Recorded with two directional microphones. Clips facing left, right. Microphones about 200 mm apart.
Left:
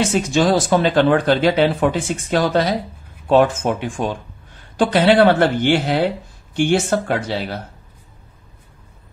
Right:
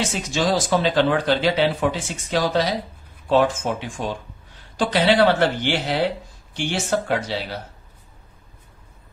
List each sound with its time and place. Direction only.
0.0 s speech: 55° left (ahead or behind)